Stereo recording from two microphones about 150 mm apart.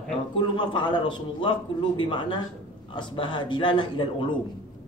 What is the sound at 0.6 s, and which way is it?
A man's voice, 30° left (ahead or behind).